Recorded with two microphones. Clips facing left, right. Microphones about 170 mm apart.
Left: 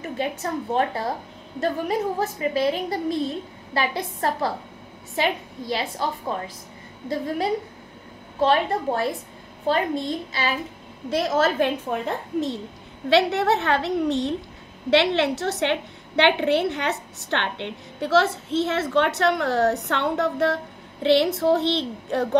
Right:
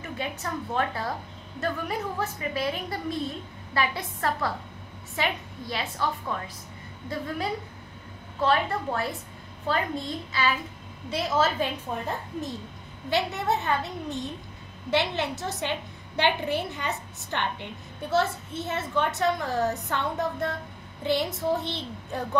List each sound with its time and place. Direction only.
0.0 s a woman's voice: 35° left (ahead or behind)
11.1 s a woman's voice: 50° left (ahead or behind); by 22.4 s 75° left (ahead or behind)